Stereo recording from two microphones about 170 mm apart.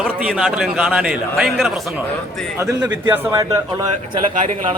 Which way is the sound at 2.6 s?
15° right (ahead or behind).